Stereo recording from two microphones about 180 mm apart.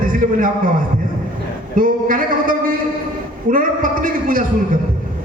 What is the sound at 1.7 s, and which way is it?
Speech, 50° right (ahead or behind).